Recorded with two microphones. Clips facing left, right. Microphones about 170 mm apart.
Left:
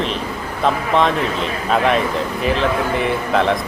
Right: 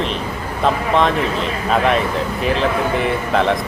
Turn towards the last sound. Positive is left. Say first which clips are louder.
# even
turn(degrees=0)  # may be behind; listen again after turning